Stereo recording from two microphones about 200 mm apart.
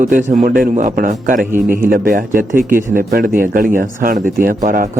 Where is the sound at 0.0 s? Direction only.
40° right (ahead or behind).